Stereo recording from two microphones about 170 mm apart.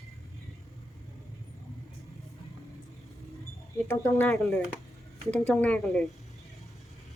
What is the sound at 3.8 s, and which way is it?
Speech, 15° left (ahead or behind).